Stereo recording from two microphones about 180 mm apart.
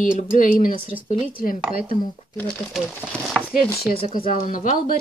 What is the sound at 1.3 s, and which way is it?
Speech, 50° left (ahead or behind).